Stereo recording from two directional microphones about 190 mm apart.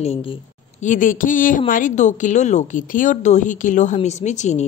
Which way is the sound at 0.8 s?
40° left (ahead or behind).